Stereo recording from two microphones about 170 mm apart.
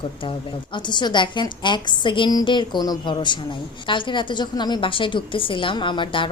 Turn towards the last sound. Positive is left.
turn(degrees=30)  # may be behind; listen again after turning